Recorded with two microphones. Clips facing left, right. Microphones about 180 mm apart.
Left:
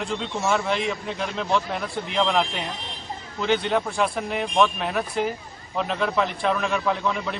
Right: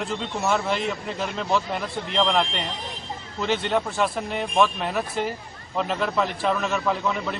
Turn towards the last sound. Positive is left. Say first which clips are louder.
# even
turn(degrees=0)  # may be behind; listen again after turning